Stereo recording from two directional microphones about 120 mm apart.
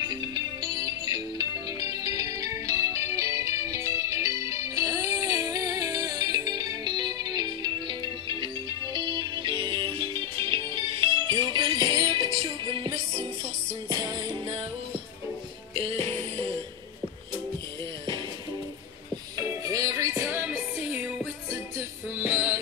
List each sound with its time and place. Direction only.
0.0 s music: 35° right (ahead or behind)
13.8 s music: 35° right (ahead or behind)
15.7 s music: 55° right (ahead or behind)
19.3 s music: 30° right (ahead or behind)
22.2 s music: 20° right (ahead or behind)